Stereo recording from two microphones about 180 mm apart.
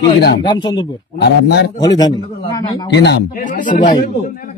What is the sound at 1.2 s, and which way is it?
Speech, 70° left (ahead or behind).